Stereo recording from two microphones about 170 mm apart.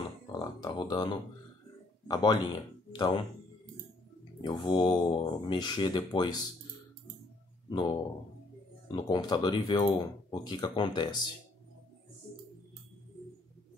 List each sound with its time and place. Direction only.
0.0 s a sound: 25° left (ahead or behind)
2.0 s speech: 25° left (ahead or behind)
4.4 s speech: 25° left (ahead or behind)
8.9 s speech: 25° left (ahead or behind)